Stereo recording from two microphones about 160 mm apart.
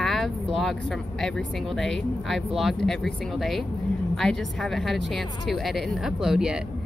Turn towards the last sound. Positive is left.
turn(degrees=-5)  # may be behind; listen again after turning